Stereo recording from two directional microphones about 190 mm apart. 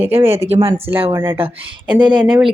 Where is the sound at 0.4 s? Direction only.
30° right (ahead or behind).